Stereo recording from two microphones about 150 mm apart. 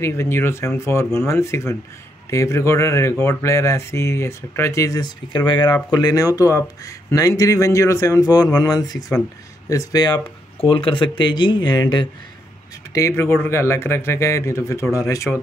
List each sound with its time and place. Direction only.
0.0 s speech: 15° left (ahead or behind)
12.9 s speech: 20° left (ahead or behind)